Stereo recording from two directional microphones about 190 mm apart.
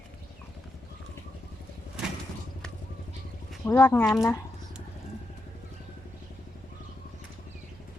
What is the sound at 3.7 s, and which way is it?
Speech, 10° left (ahead or behind).